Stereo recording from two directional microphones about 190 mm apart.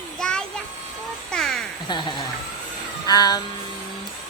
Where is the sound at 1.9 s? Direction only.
25° left (ahead or behind).